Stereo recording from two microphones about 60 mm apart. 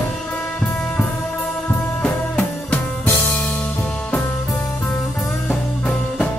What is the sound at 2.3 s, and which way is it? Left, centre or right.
Music, left.